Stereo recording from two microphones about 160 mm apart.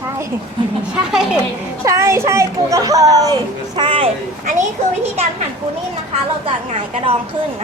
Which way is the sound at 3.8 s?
35° right (ahead or behind).